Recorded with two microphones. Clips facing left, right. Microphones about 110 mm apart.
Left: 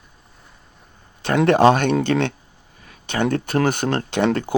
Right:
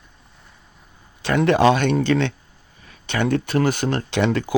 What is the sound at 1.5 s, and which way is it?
Speech, 45° left (ahead or behind).